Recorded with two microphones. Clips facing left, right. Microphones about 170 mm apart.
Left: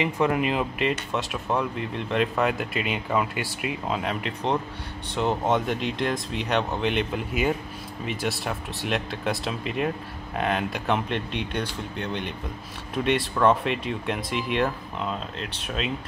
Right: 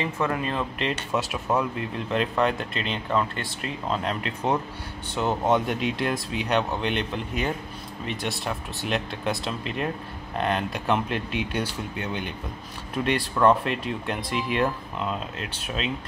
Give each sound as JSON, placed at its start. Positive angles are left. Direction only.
{"t": 0.0, "sound": "speech", "side_deg": 15}
{"t": 1.1, "sound": "speech", "side_deg": -5}